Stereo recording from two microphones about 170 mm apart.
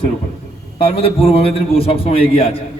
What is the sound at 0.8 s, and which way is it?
A man's voice, 35° left (ahead or behind).